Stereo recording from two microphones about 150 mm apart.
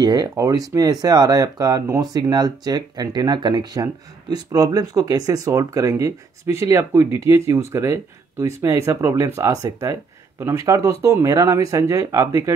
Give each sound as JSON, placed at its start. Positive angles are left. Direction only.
{"t": 0.0, "sound": "speech", "side_deg": -25}